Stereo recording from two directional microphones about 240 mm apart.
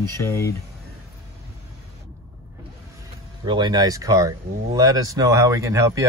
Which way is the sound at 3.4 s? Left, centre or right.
Centre.